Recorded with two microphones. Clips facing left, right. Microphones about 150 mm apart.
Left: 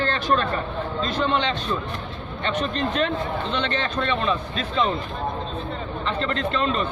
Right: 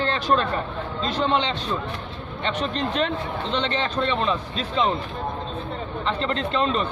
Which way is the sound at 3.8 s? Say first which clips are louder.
Even; 30° right (ahead or behind).